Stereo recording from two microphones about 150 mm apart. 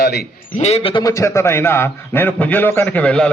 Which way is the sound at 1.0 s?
20° left (ahead or behind).